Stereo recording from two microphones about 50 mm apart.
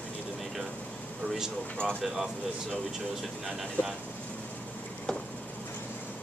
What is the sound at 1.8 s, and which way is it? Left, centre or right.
Speech, left.